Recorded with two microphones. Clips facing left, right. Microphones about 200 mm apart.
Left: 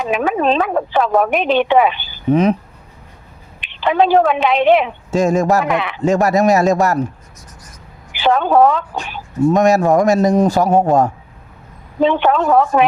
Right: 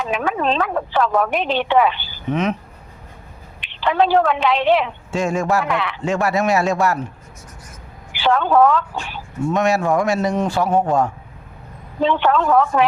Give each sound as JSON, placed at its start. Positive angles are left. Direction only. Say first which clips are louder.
{"t": 0.0, "sound": "speech", "louder": "left 4 dB", "side_deg": 15}
{"t": 2.3, "sound": "a man's voice", "louder": "left 7 dB", "side_deg": 35}
{"t": 3.7, "sound": "speech", "louder": "left 3 dB", "side_deg": 15}
{"t": 5.1, "sound": "a man's voice", "louder": "left 5 dB", "side_deg": 40}
{"t": 5.6, "sound": "speech", "louder": "left 4 dB", "side_deg": 20}
{"t": 6.0, "sound": "a man's voice", "louder": "left 7 dB", "side_deg": 40}
{"t": 8.1, "sound": "speech", "louder": "left 3 dB", "side_deg": 20}
{"t": 9.5, "sound": "a man's voice", "louder": "left 5 dB", "side_deg": 40}
{"t": 12.0, "sound": "speech", "louder": "left 3 dB", "side_deg": 15}